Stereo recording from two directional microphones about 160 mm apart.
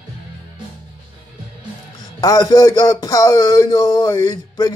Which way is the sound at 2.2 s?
25° left (ahead or behind).